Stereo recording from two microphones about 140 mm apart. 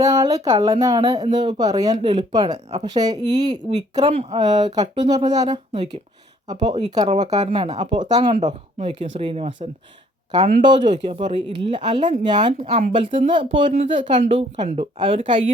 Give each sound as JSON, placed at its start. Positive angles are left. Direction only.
{"t": 0.0, "sound": "speech", "side_deg": -25}
{"t": 4.1, "sound": "speech", "side_deg": -45}
{"t": 4.4, "sound": "speech", "side_deg": -30}
{"t": 7.3, "sound": "speech", "side_deg": -45}
{"t": 11.0, "sound": "speech", "side_deg": -40}
{"t": 13.7, "sound": "speech", "side_deg": -60}
{"t": 14.3, "sound": "speech", "side_deg": -40}